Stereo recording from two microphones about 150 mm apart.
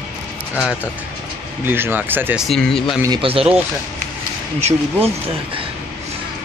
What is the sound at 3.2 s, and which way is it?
Speech, 40° right (ahead or behind).